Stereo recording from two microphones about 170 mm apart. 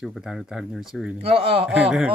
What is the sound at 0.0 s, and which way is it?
Speech, centre (ahead or behind).